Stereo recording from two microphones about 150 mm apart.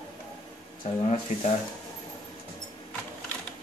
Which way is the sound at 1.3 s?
60° left (ahead or behind).